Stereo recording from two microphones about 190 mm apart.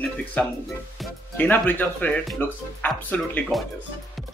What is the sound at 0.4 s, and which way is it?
Speech, 10° left (ahead or behind).